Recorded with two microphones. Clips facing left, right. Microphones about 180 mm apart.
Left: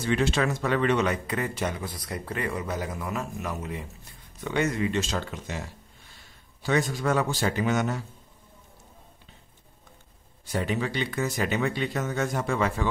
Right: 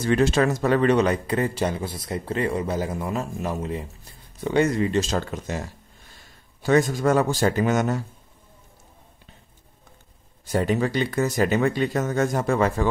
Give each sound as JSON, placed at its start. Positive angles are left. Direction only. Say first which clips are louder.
{"t": 0.0, "sound": "speech", "louder": "right 5 dB", "side_deg": -45}
{"t": 10.5, "sound": "speech", "louder": "right 6 dB", "side_deg": -40}